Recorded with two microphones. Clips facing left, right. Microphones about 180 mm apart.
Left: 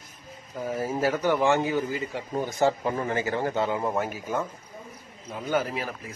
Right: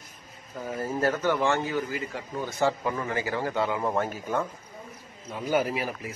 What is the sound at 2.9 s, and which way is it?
Speech, 35° left (ahead or behind).